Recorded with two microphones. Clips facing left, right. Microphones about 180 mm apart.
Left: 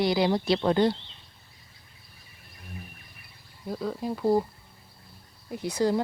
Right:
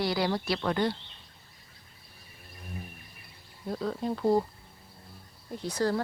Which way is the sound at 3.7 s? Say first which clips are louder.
Even; 5° left (ahead or behind).